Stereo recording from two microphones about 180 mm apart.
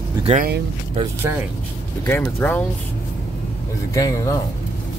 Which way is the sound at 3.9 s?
20° left (ahead or behind).